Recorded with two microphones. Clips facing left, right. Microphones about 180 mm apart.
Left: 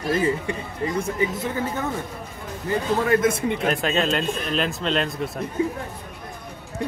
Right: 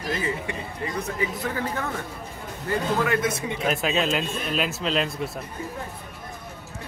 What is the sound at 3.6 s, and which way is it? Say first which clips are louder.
Speech: right 1 dB; 5° right (ahead or behind).